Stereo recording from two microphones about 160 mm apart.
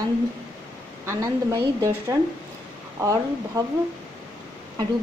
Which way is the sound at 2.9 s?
20° right (ahead or behind).